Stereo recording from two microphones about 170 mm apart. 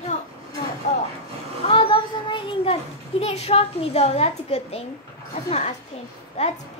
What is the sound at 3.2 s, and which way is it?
A child's voice, 35° left (ahead or behind).